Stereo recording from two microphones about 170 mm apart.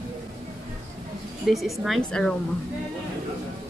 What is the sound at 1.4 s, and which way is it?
Speech, centre (ahead or behind).